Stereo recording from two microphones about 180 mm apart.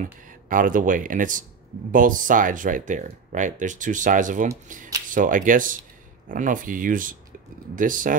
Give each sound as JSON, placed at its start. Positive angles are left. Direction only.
{"t": 0.0, "sound": "speech", "side_deg": -50}